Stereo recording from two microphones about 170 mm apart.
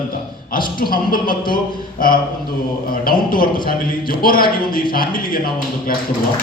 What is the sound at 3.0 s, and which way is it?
Speech, 60° left (ahead or behind).